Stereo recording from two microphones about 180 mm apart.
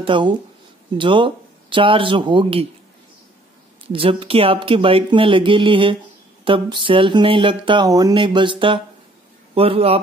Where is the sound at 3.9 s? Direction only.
30° right (ahead or behind).